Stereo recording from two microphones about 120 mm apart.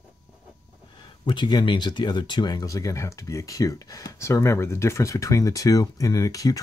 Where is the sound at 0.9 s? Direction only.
40° left (ahead or behind).